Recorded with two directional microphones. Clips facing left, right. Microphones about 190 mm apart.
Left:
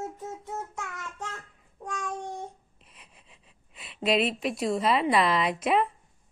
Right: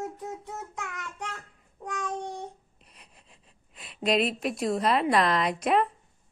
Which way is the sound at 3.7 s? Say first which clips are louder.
Even; centre (ahead or behind).